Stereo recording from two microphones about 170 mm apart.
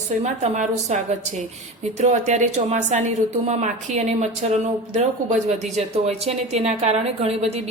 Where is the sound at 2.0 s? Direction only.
45° right (ahead or behind).